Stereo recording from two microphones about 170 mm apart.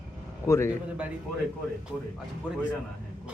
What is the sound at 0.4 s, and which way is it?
Speech, 15° left (ahead or behind).